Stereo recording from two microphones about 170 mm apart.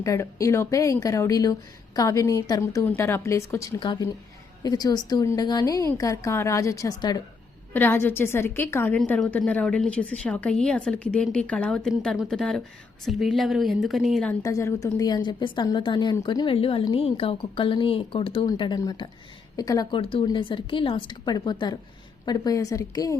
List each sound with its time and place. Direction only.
0.0 s a woman's voice: 20° left (ahead or behind)
7.7 s a woman's voice: 10° left (ahead or behind)
14.4 s a woman's voice: 20° left (ahead or behind)
20.0 s a woman's voice: 30° left (ahead or behind)